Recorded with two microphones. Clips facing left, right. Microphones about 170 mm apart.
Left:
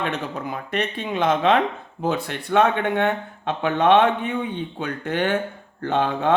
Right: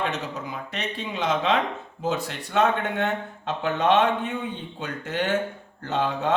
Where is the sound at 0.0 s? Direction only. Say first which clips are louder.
Left 2 dB; 55° left (ahead or behind).